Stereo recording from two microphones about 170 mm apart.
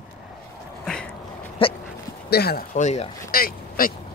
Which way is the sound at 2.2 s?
70° left (ahead or behind).